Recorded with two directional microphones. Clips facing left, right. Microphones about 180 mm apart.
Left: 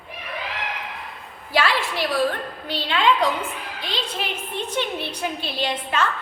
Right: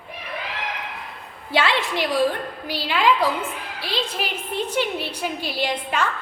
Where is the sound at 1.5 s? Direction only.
25° right (ahead or behind).